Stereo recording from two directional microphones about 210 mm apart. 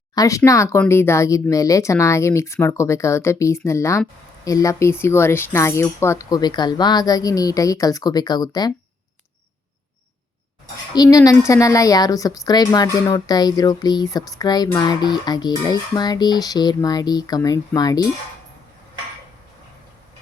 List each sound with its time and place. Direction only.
0.1 s a woman's voice: 15° left (ahead or behind)
10.9 s a woman's voice: 15° left (ahead or behind)